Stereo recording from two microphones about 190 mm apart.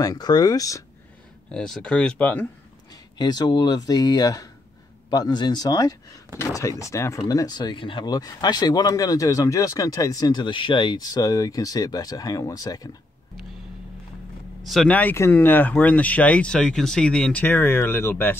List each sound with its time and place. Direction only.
0.0 s speech: 20° left (ahead or behind)
1.5 s speech: 5° left (ahead or behind)
2.9 s speech: 20° left (ahead or behind)
14.6 s speech: centre (ahead or behind)